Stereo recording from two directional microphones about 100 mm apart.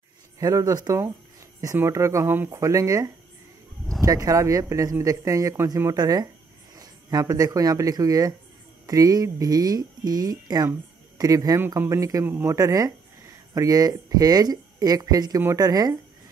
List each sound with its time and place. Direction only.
0.4 s speech: 35° right (ahead or behind)
12.3 s speech: 25° right (ahead or behind)
12.5 s speech: 35° right (ahead or behind)